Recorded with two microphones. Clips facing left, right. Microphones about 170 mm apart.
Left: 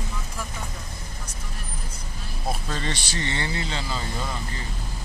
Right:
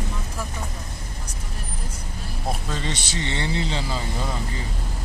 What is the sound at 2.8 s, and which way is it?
Speech, 20° right (ahead or behind).